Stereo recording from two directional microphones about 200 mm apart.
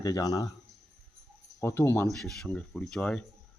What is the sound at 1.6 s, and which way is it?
Speech, 15° left (ahead or behind).